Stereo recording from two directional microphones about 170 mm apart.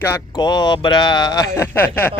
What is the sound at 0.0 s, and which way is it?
Speech, 20° left (ahead or behind).